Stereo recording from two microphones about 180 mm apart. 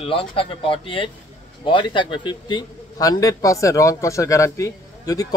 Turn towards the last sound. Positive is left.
turn(degrees=20)  # may be behind; listen again after turning